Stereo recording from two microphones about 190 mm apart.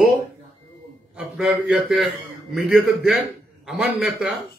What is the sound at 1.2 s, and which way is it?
A man's voice, 5° right (ahead or behind).